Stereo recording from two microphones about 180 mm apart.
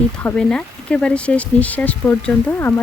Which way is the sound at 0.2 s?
5° left (ahead or behind).